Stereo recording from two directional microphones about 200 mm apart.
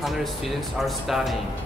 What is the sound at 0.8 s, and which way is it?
Speech, centre (ahead or behind).